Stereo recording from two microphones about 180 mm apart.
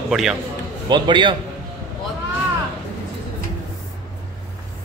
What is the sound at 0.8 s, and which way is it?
Speech, 25° right (ahead or behind).